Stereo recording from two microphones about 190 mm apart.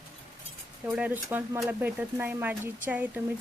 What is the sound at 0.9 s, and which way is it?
A woman's voice, 10° right (ahead or behind).